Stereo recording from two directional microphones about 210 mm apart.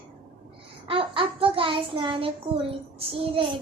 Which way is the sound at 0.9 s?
25° right (ahead or behind).